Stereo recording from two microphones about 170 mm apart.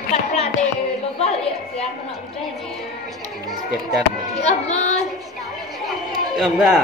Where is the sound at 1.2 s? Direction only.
35° left (ahead or behind).